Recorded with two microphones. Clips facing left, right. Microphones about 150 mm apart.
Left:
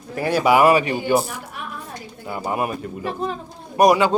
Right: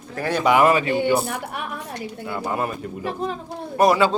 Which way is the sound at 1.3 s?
65° right (ahead or behind).